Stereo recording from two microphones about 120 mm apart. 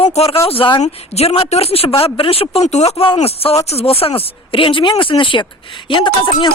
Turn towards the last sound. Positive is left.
turn(degrees=40)  # may be behind; listen again after turning